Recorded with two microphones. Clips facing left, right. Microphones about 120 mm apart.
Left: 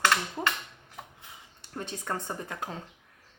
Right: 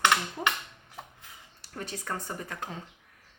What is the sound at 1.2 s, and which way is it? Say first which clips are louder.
Speech: left 1 dB; 20° left (ahead or behind).